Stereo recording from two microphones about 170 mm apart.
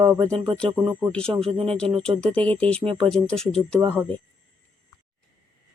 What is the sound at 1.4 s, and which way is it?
Speech, 35° right (ahead or behind).